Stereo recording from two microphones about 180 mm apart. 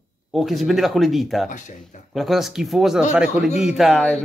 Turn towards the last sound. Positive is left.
turn(degrees=5)  # may be behind; listen again after turning